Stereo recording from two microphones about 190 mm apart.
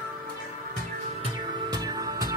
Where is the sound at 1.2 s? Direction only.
20° right (ahead or behind).